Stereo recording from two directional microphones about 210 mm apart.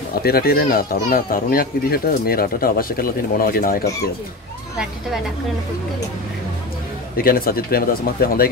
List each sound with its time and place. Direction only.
0.2 s speech: 45° left (ahead or behind)
7.2 s speech: 45° left (ahead or behind)